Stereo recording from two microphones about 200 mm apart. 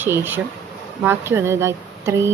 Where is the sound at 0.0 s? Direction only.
10° right (ahead or behind).